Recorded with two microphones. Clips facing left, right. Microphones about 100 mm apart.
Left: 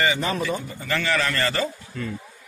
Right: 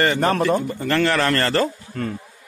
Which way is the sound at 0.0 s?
55° right (ahead or behind).